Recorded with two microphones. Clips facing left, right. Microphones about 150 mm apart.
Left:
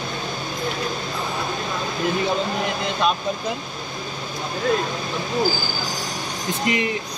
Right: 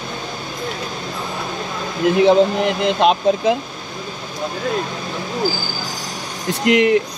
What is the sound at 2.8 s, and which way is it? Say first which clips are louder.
Speech: right 9 dB; 85° right.